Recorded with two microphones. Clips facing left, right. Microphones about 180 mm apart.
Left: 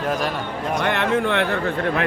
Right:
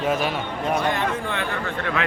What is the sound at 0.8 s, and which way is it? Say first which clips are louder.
Speech: left 4 dB; 70° left (ahead or behind).